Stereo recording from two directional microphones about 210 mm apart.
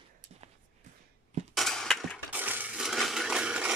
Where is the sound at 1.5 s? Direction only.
Centre (ahead or behind).